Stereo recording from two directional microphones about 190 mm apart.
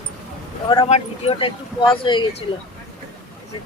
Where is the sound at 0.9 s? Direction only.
35° left (ahead or behind).